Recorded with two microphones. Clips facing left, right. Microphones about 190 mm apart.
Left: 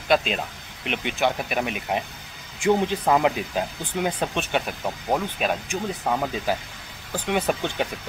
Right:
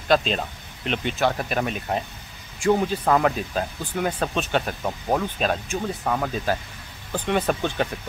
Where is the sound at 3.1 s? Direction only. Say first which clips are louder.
Even; 15° left (ahead or behind).